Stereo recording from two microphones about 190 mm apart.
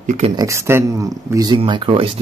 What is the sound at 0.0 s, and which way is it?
Speech, 40° right (ahead or behind).